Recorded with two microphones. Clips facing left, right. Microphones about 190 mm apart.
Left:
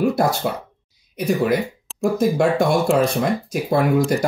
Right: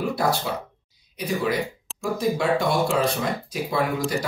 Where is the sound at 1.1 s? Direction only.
50° left (ahead or behind).